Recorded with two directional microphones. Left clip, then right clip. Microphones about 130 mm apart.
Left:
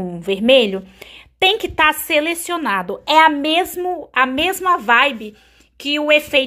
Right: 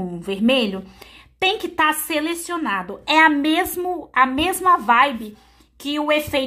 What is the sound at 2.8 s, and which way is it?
A woman's voice, 40° left (ahead or behind).